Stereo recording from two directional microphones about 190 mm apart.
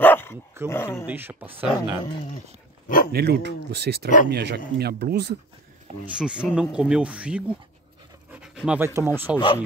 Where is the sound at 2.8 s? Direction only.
45° left (ahead or behind).